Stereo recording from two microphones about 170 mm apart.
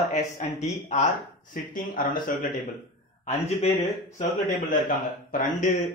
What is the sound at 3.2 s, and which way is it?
Speech, 40° left (ahead or behind).